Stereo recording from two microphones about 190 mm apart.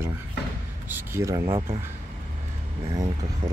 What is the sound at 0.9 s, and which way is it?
Speech, 15° right (ahead or behind).